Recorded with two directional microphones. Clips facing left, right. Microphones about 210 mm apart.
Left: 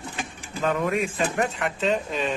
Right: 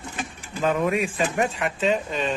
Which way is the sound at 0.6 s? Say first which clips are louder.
Right 2 dB; 15° right (ahead or behind).